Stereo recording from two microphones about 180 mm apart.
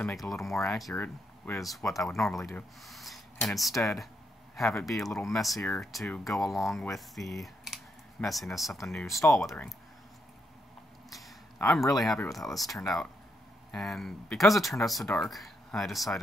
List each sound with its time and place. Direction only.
0.2 s speech: centre (ahead or behind)
0.9 s speech: 10° left (ahead or behind)
2.0 s speech: centre (ahead or behind)
11.1 s a sound: centre (ahead or behind)
11.9 s speech: centre (ahead or behind)